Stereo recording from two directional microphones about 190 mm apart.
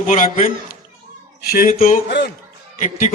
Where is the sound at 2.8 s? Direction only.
40° left (ahead or behind).